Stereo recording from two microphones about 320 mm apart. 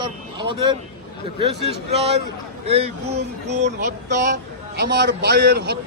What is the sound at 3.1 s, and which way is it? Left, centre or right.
Speech, right.